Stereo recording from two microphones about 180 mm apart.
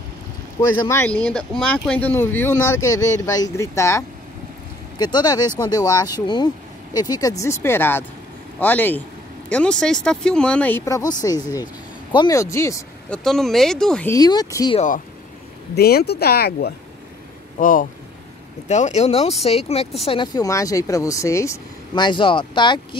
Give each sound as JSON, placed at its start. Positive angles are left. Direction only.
{"t": 0.6, "sound": "speech", "side_deg": 20}
{"t": 11.0, "sound": "speech", "side_deg": 20}
{"t": 13.2, "sound": "speech", "side_deg": 0}
{"t": 14.1, "sound": "speech", "side_deg": 20}
{"t": 15.7, "sound": "speech", "side_deg": 60}
{"t": 17.6, "sound": "speech", "side_deg": 50}